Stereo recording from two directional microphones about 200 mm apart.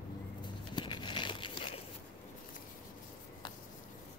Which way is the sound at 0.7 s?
25° left (ahead or behind).